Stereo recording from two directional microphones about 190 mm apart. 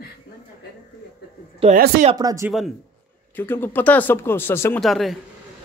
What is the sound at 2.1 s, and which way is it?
Speech, 20° right (ahead or behind).